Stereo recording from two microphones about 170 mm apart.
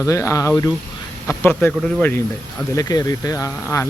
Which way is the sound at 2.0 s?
10° left (ahead or behind).